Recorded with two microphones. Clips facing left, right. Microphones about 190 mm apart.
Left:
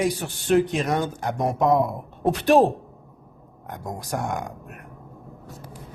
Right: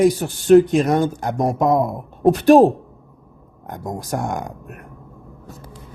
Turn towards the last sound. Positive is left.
turn(degrees=-45)  # may be behind; listen again after turning